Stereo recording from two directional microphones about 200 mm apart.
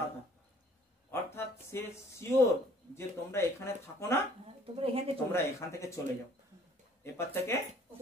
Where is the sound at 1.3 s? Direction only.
10° left (ahead or behind).